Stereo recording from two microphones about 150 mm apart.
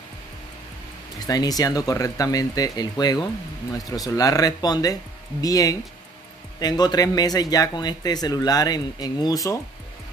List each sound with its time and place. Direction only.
1.2 s a man's voice: 25° left (ahead or behind)